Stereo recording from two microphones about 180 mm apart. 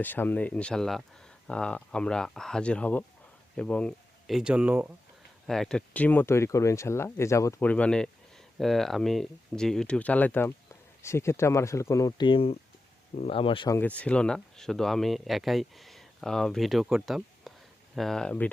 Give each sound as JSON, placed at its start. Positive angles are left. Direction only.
{"t": 0.0, "sound": "speech", "side_deg": 10}
{"t": 5.5, "sound": "speech", "side_deg": 5}
{"t": 13.7, "sound": "speech", "side_deg": 10}